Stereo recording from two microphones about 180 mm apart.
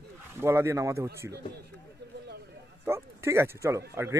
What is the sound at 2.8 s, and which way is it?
Speech, 15° right (ahead or behind).